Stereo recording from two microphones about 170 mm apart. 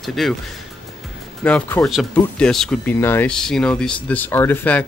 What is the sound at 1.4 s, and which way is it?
Speech, 5° left (ahead or behind).